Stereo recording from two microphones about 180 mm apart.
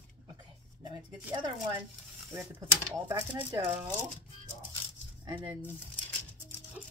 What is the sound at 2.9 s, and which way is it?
Speech, 15° right (ahead or behind).